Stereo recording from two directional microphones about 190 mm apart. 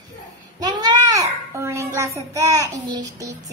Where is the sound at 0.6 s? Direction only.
20° right (ahead or behind).